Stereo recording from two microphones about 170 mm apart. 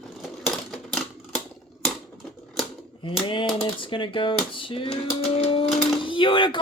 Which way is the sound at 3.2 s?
30° left (ahead or behind).